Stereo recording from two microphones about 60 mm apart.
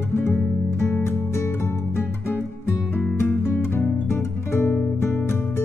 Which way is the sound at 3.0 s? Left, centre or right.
Left.